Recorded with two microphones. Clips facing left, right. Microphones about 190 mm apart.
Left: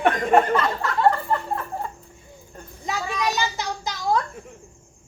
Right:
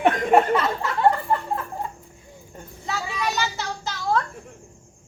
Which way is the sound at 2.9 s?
15° left (ahead or behind).